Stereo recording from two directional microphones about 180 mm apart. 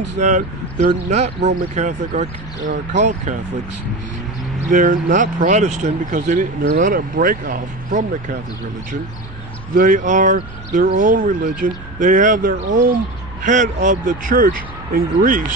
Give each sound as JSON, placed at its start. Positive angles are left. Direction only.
{"t": 0.2, "sound": "speech", "side_deg": -40}
{"t": 4.6, "sound": "speech", "side_deg": -50}
{"t": 9.8, "sound": "speech", "side_deg": -45}